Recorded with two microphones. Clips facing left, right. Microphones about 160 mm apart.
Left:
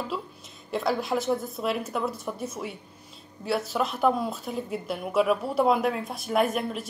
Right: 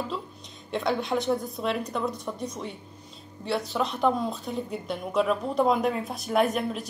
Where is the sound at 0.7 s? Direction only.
5° left (ahead or behind).